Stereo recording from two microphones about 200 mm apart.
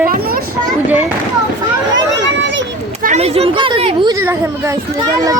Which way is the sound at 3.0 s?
30° right (ahead or behind).